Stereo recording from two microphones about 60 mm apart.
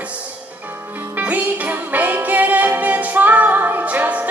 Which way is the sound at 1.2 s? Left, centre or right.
Right.